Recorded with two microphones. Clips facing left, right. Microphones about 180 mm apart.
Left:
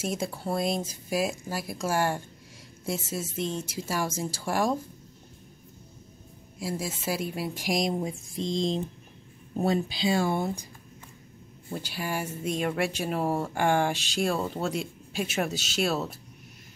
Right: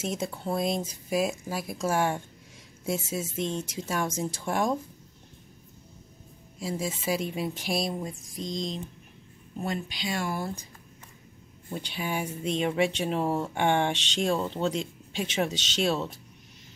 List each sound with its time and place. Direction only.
0.0 s speech: 5° left (ahead or behind)
6.6 s speech: 5° left (ahead or behind); by 10.4 s 30° left (ahead or behind)
10.4 s speech: 15° left (ahead or behind)
11.7 s speech: 5° left (ahead or behind)